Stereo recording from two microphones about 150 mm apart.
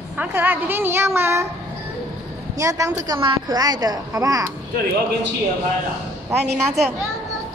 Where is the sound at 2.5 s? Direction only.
20° right (ahead or behind).